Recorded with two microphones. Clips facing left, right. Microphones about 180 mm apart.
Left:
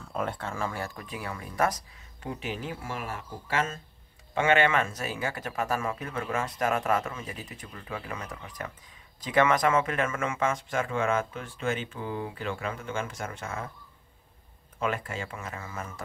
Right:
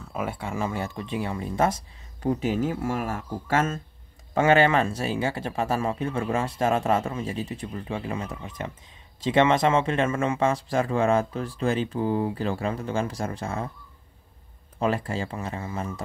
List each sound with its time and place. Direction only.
0.0 s speech: 5° right (ahead or behind); by 1.8 s 25° right (ahead or behind)
2.2 s speech: 40° right (ahead or behind)
14.8 s speech: 35° right (ahead or behind)